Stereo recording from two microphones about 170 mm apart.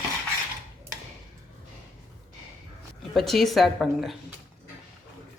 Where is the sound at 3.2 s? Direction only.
Centre (ahead or behind).